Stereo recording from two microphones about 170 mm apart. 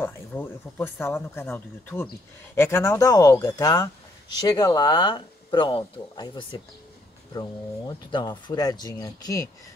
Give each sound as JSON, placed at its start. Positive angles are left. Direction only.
{"t": 0.0, "sound": "speech", "side_deg": 10}
{"t": 8.1, "sound": "speech", "side_deg": 25}